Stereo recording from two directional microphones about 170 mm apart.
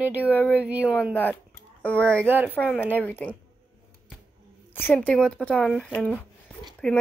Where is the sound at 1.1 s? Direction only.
10° left (ahead or behind).